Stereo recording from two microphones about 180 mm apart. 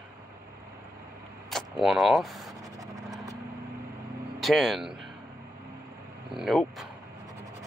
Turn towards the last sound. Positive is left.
turn(degrees=0)  # may be behind; listen again after turning